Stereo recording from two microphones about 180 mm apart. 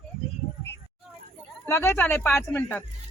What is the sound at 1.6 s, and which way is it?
Speech, 15° left (ahead or behind).